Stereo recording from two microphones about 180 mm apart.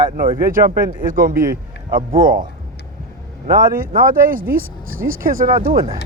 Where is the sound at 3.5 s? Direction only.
55° right (ahead or behind).